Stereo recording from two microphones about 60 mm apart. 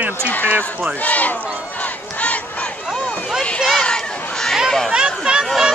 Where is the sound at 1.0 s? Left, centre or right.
Left.